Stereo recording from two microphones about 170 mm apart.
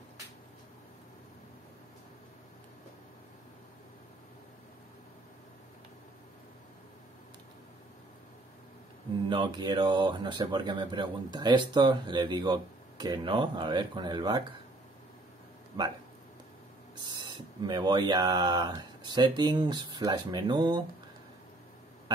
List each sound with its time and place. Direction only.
9.3 s speech: 25° right (ahead or behind)
15.8 s a sound: 25° right (ahead or behind)
17.2 s speech: 25° right (ahead or behind)